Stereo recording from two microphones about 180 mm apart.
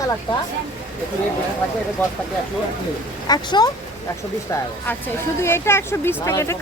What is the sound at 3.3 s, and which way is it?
Speech, 20° left (ahead or behind).